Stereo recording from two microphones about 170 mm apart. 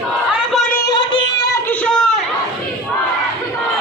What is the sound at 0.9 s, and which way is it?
Music, 25° left (ahead or behind).